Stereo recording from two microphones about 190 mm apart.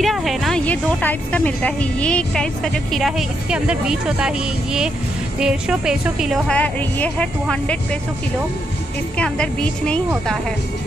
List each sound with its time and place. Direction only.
0.0 s a woman's voice: centre (ahead or behind)
5.4 s a woman's voice: 5° right (ahead or behind)
9.2 s a woman's voice: 5° left (ahead or behind)